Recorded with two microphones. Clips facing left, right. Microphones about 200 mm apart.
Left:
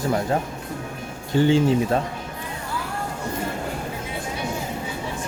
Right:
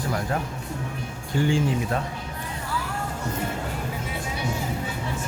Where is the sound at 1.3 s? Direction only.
25° left (ahead or behind).